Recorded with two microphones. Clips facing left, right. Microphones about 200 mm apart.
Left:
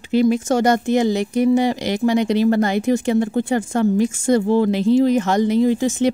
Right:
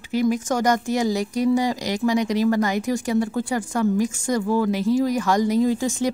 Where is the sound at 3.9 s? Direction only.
40° left (ahead or behind).